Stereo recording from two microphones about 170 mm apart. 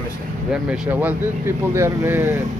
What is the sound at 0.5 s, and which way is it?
Speech, 5° right (ahead or behind).